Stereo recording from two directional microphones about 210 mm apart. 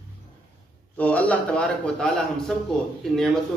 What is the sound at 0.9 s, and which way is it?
A man's voice, 5° left (ahead or behind).